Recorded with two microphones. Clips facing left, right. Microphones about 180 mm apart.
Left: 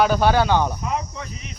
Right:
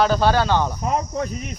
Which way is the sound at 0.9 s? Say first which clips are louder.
Right 5 dB; 45° right (ahead or behind).